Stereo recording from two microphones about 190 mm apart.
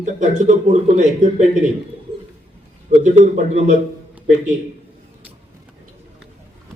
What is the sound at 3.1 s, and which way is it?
Speech, 40° right (ahead or behind).